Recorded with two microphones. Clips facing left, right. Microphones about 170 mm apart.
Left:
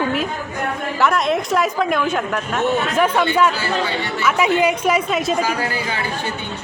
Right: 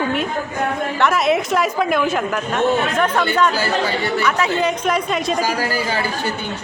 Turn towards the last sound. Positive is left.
turn(degrees=-35)  # may be behind; listen again after turning